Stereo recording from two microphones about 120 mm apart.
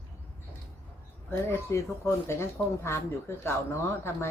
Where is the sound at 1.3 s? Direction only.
20° left (ahead or behind).